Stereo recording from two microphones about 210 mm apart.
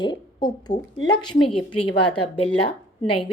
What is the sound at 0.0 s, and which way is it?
A woman's voice, 20° left (ahead or behind).